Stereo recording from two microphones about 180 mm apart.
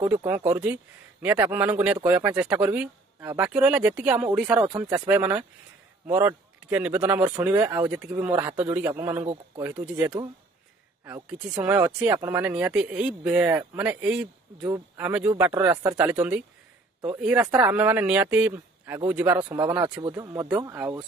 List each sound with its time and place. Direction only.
0.1 s speech: 10° right (ahead or behind)
11.6 s speech: 10° right (ahead or behind)
20.0 s speech: 20° right (ahead or behind)
20.6 s speech: 10° right (ahead or behind)